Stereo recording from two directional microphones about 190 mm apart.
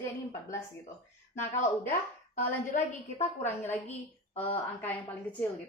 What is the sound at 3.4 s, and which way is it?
A woman's voice, 10° left (ahead or behind).